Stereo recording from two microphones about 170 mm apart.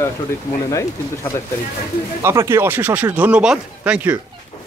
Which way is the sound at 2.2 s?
15° right (ahead or behind).